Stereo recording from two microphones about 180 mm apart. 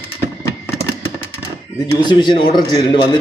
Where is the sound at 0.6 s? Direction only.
15° left (ahead or behind).